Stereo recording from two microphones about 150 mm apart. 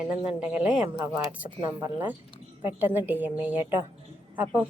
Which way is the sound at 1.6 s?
30° right (ahead or behind).